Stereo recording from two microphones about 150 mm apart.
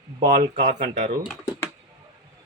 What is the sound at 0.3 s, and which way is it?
Speech, 65° right (ahead or behind).